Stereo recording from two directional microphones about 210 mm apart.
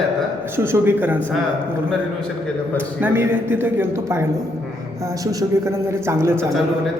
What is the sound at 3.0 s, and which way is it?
A man's voice, 10° right (ahead or behind).